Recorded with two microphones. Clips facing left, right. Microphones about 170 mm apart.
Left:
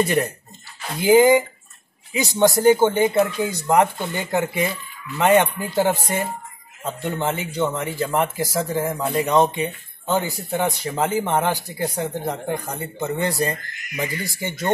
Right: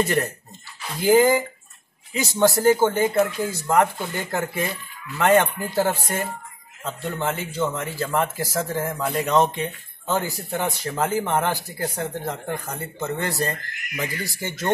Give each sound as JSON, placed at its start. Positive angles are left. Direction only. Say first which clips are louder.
{"t": 0.0, "sound": "speech", "louder": "left 2 dB", "side_deg": 15}
{"t": 7.2, "sound": "speech", "louder": "left 1 dB", "side_deg": 0}
{"t": 7.7, "sound": "speech", "louder": "left 2 dB", "side_deg": 15}